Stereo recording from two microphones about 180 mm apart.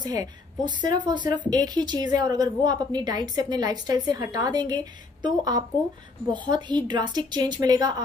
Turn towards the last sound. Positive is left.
turn(degrees=-20)  # may be behind; listen again after turning